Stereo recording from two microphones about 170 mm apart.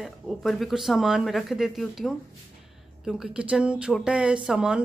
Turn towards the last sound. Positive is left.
turn(degrees=-5)  # may be behind; listen again after turning